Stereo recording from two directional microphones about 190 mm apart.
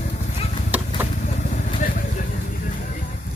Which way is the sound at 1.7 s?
45° left (ahead or behind).